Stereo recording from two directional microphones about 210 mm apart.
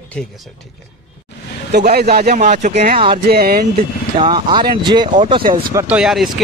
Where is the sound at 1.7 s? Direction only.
45° right (ahead or behind); by 3.2 s 25° right (ahead or behind).